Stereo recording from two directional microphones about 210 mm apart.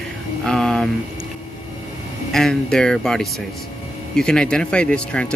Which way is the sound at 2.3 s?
5° left (ahead or behind).